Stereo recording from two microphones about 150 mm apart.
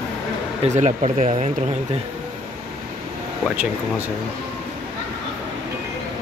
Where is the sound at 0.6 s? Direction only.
50° right (ahead or behind).